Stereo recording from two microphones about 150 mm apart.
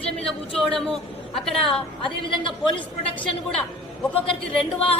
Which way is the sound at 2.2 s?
35° left (ahead or behind).